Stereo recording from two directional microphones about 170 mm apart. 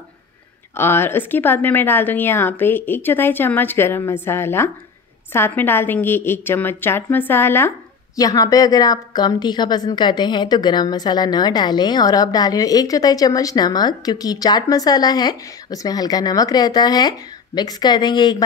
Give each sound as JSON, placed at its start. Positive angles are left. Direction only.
{"t": 0.7, "sound": "a woman's voice", "side_deg": 15}